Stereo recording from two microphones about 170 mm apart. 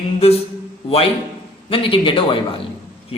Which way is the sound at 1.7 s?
30° left (ahead or behind).